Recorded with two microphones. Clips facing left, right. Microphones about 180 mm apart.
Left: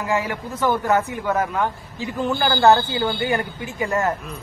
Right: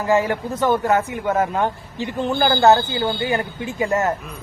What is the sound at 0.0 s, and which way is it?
A man's voice, 30° right (ahead or behind).